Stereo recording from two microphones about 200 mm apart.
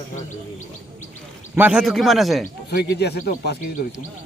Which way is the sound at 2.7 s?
55° left (ahead or behind).